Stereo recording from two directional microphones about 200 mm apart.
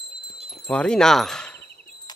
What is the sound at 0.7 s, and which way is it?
Speech, 5° left (ahead or behind).